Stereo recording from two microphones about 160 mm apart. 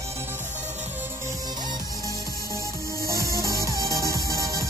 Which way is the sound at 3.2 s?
70° right (ahead or behind).